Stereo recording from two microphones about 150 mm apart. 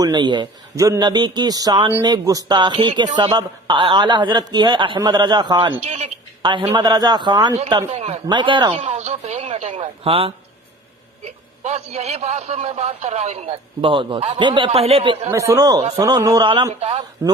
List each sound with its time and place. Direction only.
0.0 s a man's voice: 30° right (ahead or behind)
5.8 s speech: 45° right (ahead or behind)
6.4 s speech: 30° right (ahead or behind)
7.9 s speech: 45° right (ahead or behind)
8.3 s a sound: 30° right (ahead or behind)
11.3 s speech: 45° right (ahead or behind)
15.3 s speech: 20° right (ahead or behind)